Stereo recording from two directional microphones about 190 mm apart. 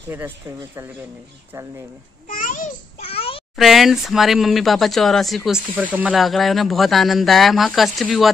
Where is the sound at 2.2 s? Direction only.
45° left (ahead or behind).